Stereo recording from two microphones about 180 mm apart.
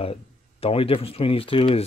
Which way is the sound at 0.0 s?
30° left (ahead or behind).